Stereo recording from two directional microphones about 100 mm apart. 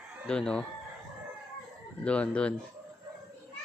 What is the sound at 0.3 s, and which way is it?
Speech, 10° left (ahead or behind).